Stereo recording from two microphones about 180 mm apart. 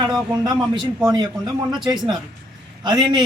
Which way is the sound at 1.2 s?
25° right (ahead or behind).